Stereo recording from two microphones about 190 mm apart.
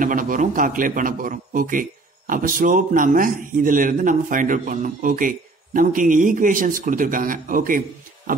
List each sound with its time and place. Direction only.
0.0 s a man's voice: 45° right (ahead or behind)